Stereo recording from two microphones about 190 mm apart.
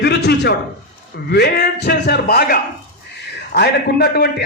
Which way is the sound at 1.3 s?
55° left (ahead or behind).